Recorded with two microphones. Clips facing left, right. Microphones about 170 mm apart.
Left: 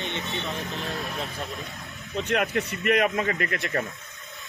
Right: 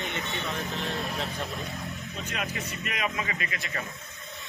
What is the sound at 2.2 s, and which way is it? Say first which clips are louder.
Speech: left 10 dB; 70° left (ahead or behind).